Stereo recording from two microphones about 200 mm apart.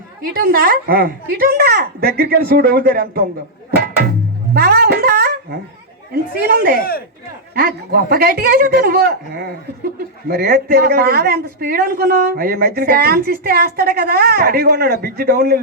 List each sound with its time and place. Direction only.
0.3 s a woman's voice: 50° right (ahead or behind)
4.5 s a sound: 50° right (ahead or behind)
6.1 s a woman's voice: 50° right (ahead or behind)
6.7 s speech: 50° left (ahead or behind)
7.5 s a woman's voice: 50° right (ahead or behind)